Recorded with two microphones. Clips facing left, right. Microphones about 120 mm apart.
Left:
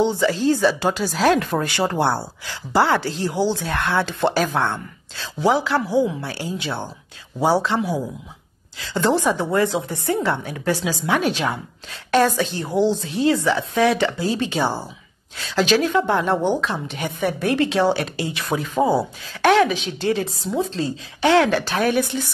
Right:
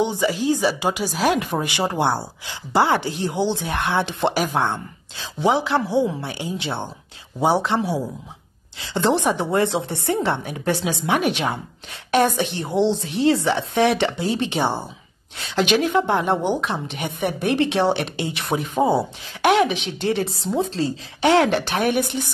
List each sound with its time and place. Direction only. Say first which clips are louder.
0.0 s a woman's voice: left 2 dB; 15° right (ahead or behind)